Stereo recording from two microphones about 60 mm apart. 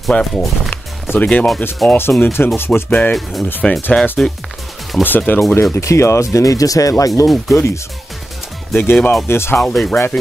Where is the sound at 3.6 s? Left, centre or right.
Centre.